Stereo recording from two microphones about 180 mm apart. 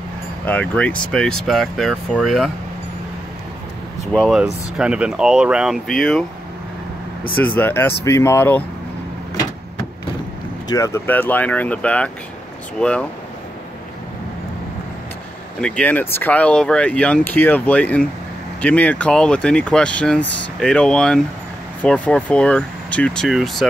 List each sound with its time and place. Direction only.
0.5 s speech: 10° left (ahead or behind)
4.1 s speech: centre (ahead or behind)
7.4 s speech: 10° left (ahead or behind)
10.7 s speech: 15° left (ahead or behind)
15.6 s speech: 5° left (ahead or behind)